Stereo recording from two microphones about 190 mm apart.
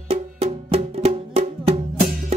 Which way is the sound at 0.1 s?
30° right (ahead or behind).